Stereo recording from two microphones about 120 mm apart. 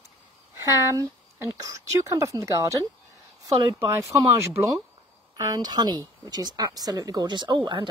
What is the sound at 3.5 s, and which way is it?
Speech, 60° right (ahead or behind).